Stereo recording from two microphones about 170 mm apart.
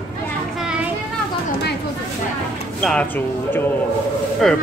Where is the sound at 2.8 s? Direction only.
10° left (ahead or behind).